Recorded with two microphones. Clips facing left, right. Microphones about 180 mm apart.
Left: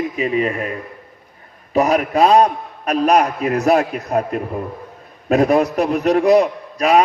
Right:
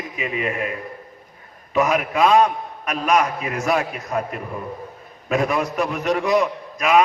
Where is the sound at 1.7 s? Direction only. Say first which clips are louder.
Left 4 dB; 35° left (ahead or behind).